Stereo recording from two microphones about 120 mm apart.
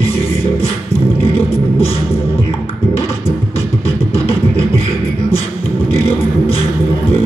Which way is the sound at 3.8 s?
55° left (ahead or behind).